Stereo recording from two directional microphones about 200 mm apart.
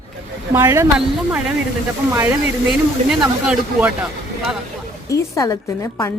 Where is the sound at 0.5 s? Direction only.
15° right (ahead or behind).